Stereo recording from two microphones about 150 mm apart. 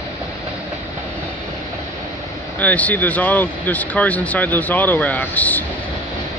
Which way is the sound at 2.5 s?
10° left (ahead or behind).